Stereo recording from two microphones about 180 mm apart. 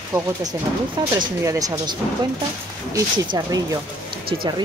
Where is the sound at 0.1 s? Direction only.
20° right (ahead or behind).